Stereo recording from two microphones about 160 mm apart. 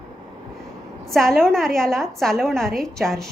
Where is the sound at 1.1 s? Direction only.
Centre (ahead or behind).